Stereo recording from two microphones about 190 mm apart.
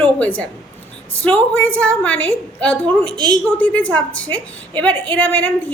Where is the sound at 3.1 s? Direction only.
25° right (ahead or behind).